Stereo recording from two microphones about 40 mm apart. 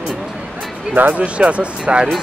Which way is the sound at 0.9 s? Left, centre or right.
Right.